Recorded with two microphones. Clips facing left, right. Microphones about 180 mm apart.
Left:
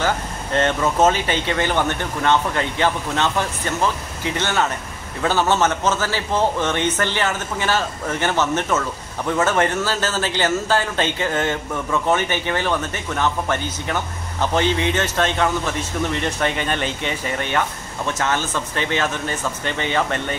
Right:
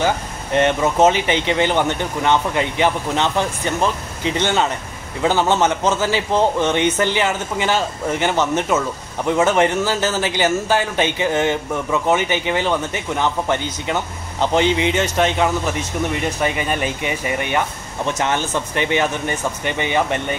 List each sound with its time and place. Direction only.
0.0 s a man's voice: 15° right (ahead or behind)